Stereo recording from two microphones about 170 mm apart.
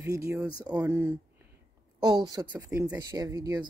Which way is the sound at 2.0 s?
25° right (ahead or behind).